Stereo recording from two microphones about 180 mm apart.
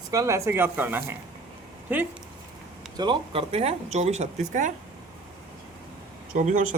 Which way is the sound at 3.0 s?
30° right (ahead or behind).